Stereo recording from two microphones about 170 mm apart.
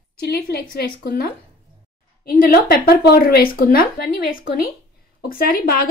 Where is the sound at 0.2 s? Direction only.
70° left (ahead or behind).